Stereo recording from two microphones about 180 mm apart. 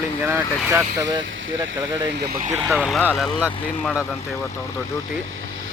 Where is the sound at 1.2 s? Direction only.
90° right; by 2.5 s 50° right (ahead or behind).